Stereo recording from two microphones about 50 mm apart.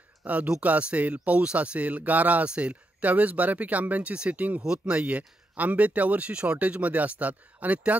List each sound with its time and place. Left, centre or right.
0.2 s speech: right